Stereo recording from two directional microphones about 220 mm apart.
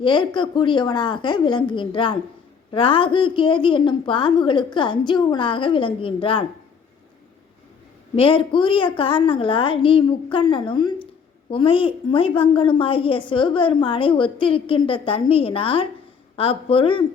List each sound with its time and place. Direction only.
0.0 s a woman's voice: 20° left (ahead or behind)
8.1 s a woman's voice: 25° left (ahead or behind)